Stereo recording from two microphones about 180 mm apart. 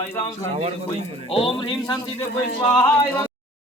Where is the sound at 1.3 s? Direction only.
30° left (ahead or behind).